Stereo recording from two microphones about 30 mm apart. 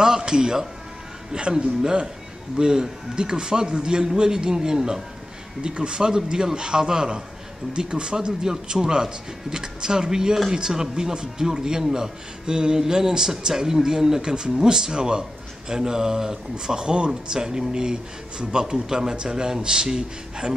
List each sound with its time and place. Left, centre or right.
0.0 s music: right
1.3 s speech: right